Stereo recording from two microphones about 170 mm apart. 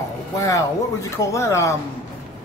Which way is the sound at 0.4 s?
20° left (ahead or behind).